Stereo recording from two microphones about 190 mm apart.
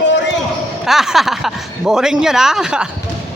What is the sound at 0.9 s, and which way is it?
Speech, centre (ahead or behind).